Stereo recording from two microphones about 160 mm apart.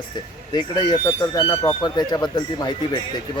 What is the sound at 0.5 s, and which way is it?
Speech, 30° left (ahead or behind).